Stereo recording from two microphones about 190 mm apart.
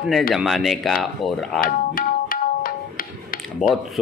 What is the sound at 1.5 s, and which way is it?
Tabla, 50° left (ahead or behind).